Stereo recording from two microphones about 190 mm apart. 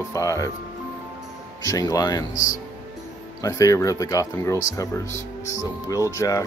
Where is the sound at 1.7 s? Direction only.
20° left (ahead or behind).